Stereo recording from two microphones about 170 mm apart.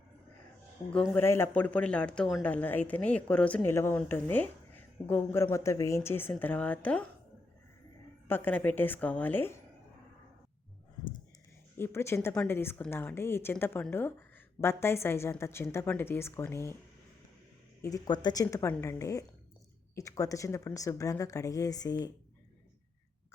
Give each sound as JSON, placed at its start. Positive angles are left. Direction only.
{"t": 0.9, "sound": "speech", "side_deg": 10}
{"t": 8.3, "sound": "speech", "side_deg": 10}
{"t": 11.8, "sound": "speech", "side_deg": 15}
{"t": 17.8, "sound": "a woman's voice", "side_deg": 20}